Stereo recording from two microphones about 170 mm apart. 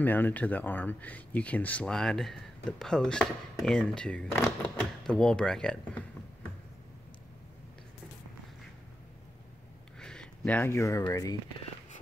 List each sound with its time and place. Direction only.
0.0 s speech: 10° left (ahead or behind)
9.9 s speech: 5° left (ahead or behind)